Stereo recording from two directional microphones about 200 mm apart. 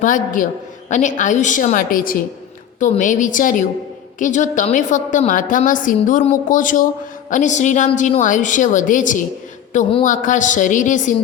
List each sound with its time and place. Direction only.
0.0 s a woman's voice: 40° left (ahead or behind)